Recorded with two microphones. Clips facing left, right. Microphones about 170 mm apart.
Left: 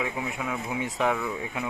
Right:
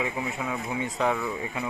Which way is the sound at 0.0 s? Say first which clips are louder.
Right 1 dB; centre (ahead or behind).